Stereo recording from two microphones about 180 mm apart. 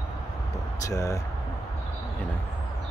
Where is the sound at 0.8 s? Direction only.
15° left (ahead or behind).